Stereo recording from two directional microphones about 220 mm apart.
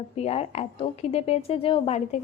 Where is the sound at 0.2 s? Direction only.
30° left (ahead or behind).